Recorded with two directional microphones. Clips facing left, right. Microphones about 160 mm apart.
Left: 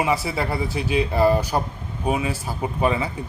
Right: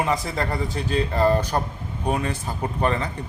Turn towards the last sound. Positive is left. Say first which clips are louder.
# left 2 dB
turn(degrees=5)  # may be behind; listen again after turning